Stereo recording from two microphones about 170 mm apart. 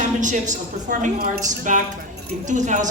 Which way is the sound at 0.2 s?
45° right (ahead or behind).